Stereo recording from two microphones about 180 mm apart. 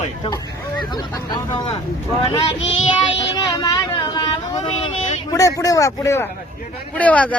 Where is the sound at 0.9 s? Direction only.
25° left (ahead or behind).